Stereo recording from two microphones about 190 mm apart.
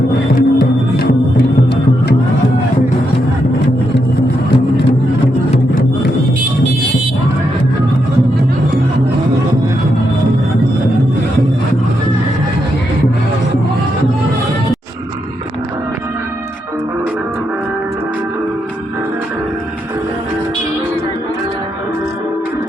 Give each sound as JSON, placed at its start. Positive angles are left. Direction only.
{"t": 0.3, "sound": "music", "side_deg": 55}